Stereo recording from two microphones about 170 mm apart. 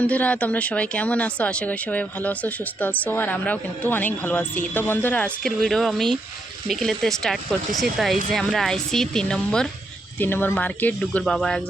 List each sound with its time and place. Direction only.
0.0 s speech: 10° left (ahead or behind)